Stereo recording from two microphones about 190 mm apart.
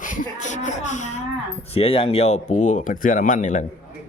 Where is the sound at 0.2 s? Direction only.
40° left (ahead or behind).